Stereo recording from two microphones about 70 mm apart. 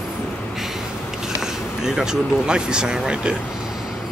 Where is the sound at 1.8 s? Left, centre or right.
Centre.